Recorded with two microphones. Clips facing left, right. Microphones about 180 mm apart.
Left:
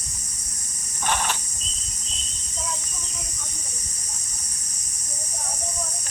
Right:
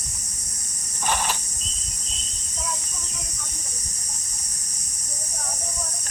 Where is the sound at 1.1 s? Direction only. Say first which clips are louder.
Even; centre (ahead or behind).